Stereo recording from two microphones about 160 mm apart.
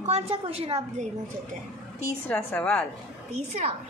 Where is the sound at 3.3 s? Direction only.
45° right (ahead or behind).